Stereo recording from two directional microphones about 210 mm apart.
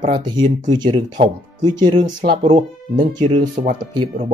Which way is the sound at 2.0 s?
40° right (ahead or behind).